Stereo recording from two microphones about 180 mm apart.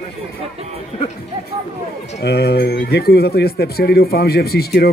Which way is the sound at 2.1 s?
65° left (ahead or behind).